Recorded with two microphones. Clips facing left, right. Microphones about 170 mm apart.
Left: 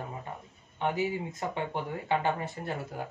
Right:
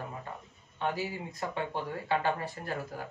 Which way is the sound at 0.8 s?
20° left (ahead or behind).